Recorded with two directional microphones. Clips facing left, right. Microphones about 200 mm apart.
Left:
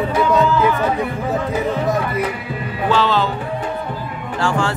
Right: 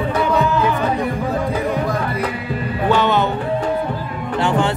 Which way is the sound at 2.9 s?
20° right (ahead or behind).